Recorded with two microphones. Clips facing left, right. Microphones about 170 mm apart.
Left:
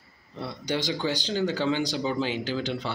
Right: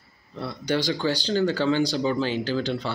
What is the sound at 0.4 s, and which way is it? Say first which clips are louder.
Speech: right 4 dB; 20° left (ahead or behind).